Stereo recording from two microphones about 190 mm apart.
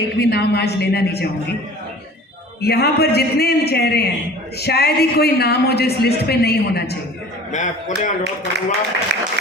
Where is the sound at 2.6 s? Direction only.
55° left (ahead or behind).